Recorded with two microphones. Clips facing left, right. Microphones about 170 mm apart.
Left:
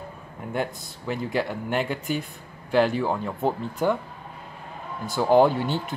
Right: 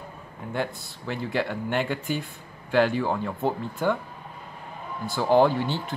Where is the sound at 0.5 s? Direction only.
10° left (ahead or behind).